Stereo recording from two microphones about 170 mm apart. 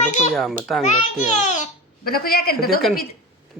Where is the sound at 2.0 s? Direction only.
60° left (ahead or behind).